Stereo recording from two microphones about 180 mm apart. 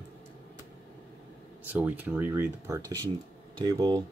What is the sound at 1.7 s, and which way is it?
Speech, 10° right (ahead or behind).